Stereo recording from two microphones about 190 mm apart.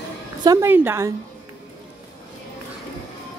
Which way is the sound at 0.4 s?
15° right (ahead or behind).